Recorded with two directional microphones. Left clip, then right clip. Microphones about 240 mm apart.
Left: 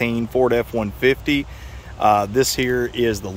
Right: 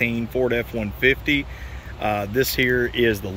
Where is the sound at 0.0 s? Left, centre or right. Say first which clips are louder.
Left 3 dB; centre.